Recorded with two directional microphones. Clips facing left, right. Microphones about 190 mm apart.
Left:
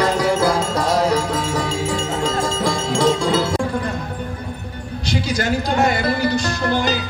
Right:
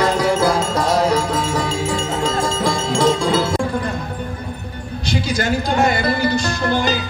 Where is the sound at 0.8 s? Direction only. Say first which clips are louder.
Right 1 dB; 25° right (ahead or behind).